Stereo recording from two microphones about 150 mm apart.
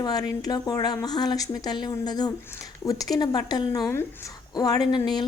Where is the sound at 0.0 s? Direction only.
25° left (ahead or behind).